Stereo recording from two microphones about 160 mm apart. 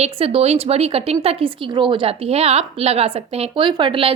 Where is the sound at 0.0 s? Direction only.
40° right (ahead or behind).